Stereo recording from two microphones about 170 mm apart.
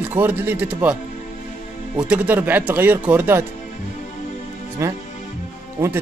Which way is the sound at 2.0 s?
10° right (ahead or behind).